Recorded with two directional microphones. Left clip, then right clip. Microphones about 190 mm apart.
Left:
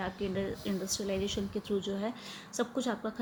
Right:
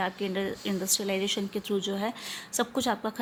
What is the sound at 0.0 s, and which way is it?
A woman's voice, 55° right (ahead or behind).